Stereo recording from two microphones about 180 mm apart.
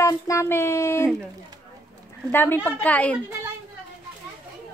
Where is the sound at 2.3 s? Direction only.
10° left (ahead or behind).